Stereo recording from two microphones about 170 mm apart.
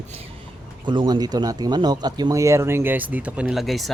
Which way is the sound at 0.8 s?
25° right (ahead or behind).